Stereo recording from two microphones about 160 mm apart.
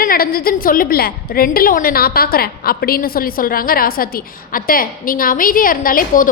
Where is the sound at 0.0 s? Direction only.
65° left (ahead or behind).